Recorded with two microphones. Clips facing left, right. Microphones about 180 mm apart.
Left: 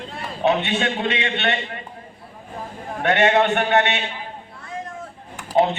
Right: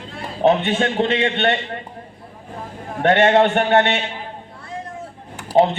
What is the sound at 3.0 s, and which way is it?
Speech, 50° right (ahead or behind).